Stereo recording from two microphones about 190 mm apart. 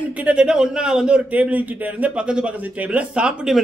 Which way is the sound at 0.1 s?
5° right (ahead or behind).